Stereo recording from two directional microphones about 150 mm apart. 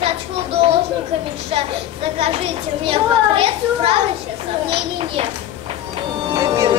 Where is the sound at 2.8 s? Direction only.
40° right (ahead or behind).